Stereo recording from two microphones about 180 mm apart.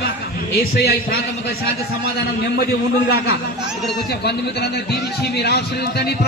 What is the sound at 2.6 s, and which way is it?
A man's voice, 60° left (ahead or behind).